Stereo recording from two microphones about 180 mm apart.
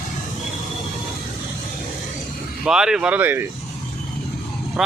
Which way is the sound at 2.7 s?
5° right (ahead or behind).